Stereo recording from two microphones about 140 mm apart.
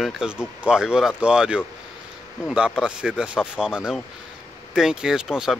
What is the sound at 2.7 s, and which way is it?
Speech, 5° right (ahead or behind).